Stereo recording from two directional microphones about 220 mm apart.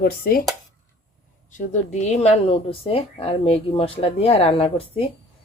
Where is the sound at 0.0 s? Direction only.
40° left (ahead or behind).